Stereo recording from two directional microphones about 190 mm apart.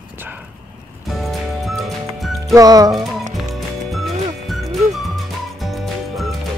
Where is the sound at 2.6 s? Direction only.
20° right (ahead or behind).